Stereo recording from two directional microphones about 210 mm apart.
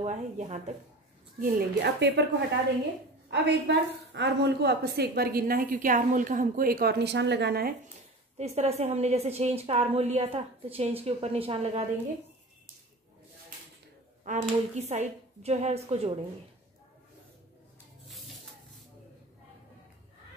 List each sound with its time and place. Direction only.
0.0 s a woman's voice: 30° right (ahead or behind)
1.4 s speech: 50° right (ahead or behind)
3.3 s a woman's voice: 55° right (ahead or behind)
8.4 s a woman's voice: 30° right (ahead or behind)
14.2 s a woman's voice: 35° right (ahead or behind)